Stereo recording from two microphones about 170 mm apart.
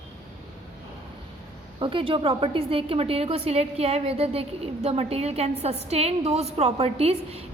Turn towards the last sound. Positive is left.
turn(degrees=-35)  # may be behind; listen again after turning